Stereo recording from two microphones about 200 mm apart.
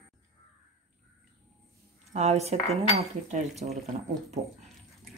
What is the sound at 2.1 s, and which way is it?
Speech, 35° right (ahead or behind).